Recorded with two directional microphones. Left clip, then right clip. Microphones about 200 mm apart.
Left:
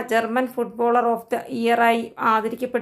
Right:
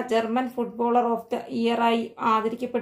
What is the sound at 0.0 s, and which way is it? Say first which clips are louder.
A woman's voice: left 3 dB; 15° left (ahead or behind).